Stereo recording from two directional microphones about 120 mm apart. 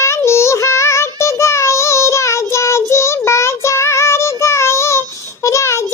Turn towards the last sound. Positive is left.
turn(degrees=25)  # may be behind; listen again after turning